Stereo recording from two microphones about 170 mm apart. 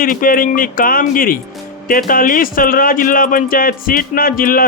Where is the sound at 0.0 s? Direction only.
55° left (ahead or behind).